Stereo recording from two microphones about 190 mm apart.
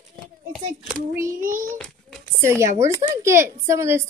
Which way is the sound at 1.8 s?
5° left (ahead or behind).